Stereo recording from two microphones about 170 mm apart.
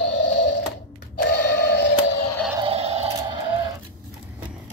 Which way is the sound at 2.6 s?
35° right (ahead or behind).